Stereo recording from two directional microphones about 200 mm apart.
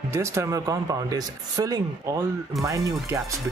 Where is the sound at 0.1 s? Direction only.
15° right (ahead or behind).